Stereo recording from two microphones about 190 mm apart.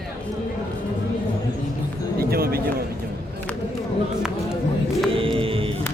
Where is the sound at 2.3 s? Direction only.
55° right (ahead or behind).